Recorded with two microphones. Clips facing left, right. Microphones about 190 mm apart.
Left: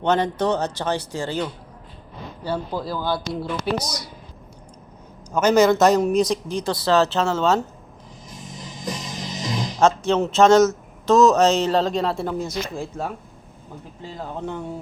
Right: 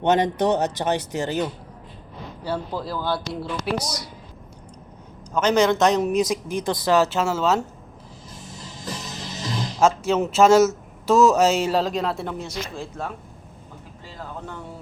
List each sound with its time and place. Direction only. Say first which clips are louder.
0.0 s speech: right 1 dB; 20° right (ahead or behind)
2.4 s speech: left 1 dB; 5° right (ahead or behind)
5.3 s speech: left 3 dB; 10° left (ahead or behind)
6.7 s speech: left 1 dB; 15° right (ahead or behind)
8.5 s music: left 3 dB; 15° left (ahead or behind)
9.8 s speech: left 1 dB; 5° right (ahead or behind)